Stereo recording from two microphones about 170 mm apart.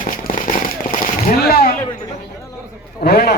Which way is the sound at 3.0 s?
65° left (ahead or behind).